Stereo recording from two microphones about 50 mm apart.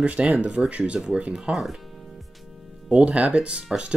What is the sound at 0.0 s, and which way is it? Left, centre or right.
Speech, right.